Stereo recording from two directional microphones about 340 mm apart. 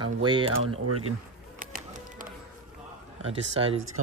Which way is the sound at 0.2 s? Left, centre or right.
Centre.